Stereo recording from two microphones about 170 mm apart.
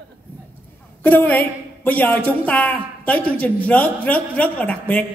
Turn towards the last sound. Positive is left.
turn(degrees=10)  # may be behind; listen again after turning